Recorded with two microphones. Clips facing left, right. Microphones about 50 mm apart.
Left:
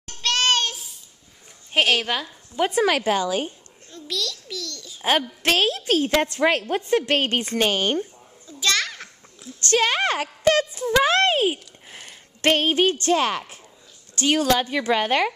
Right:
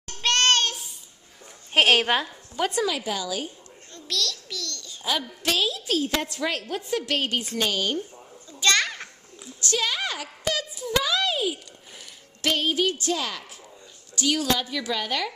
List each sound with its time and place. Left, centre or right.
0.2 s child singing: centre
1.8 s a woman's voice: centre
2.5 s speech: centre
2.8 s a woman's voice: left
3.9 s a child's voice: centre
5.0 s a woman's voice: left
8.5 s children playing: centre
9.6 s a woman's voice: left